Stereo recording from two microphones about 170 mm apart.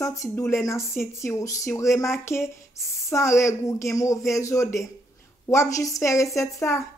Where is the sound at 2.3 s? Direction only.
Centre (ahead or behind).